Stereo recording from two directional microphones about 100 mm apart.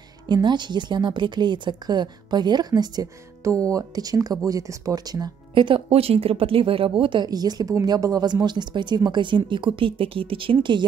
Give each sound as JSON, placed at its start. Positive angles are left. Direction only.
{"t": 0.3, "sound": "a woman's voice", "side_deg": -50}
{"t": 5.5, "sound": "speech", "side_deg": -55}
{"t": 7.2, "sound": "a woman's voice", "side_deg": -40}